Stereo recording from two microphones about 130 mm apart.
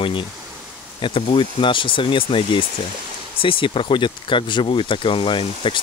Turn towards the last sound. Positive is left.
turn(degrees=40)  # may be behind; listen again after turning